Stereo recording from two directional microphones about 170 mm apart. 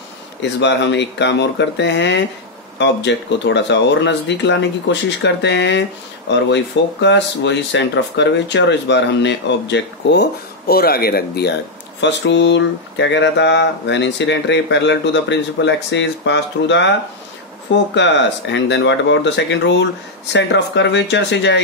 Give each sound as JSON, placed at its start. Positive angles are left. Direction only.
{"t": 0.4, "sound": "speech", "side_deg": 90}
{"t": 12.0, "sound": "speech", "side_deg": 90}
{"t": 17.9, "sound": "speech", "side_deg": 90}